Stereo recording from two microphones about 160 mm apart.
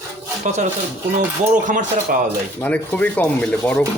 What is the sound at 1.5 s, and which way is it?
Speech, 55° right (ahead or behind).